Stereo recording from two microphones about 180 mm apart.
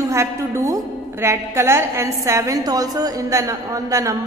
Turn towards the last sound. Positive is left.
turn(degrees=-20)  # may be behind; listen again after turning